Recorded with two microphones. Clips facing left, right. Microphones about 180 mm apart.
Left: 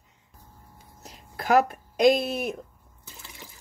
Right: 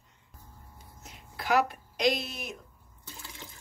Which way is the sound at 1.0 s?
45° left (ahead or behind).